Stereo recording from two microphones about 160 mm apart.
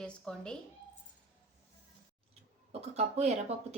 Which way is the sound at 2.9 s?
45° right (ahead or behind).